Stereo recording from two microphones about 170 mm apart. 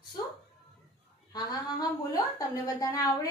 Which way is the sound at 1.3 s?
20° left (ahead or behind).